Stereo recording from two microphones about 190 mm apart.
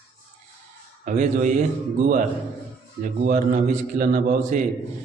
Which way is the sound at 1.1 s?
40° right (ahead or behind).